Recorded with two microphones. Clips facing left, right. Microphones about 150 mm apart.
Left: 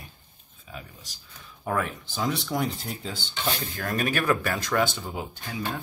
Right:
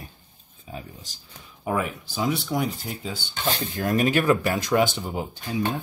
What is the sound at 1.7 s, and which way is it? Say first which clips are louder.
Speech: right 2 dB; 10° right (ahead or behind).